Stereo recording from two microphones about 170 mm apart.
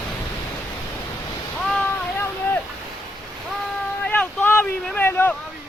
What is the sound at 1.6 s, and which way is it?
Vehicle, 5° left (ahead or behind).